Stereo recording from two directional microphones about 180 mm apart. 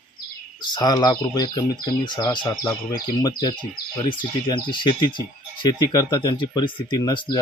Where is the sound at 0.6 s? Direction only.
25° left (ahead or behind).